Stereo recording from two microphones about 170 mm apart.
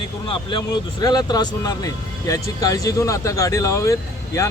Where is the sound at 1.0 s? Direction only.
25° left (ahead or behind).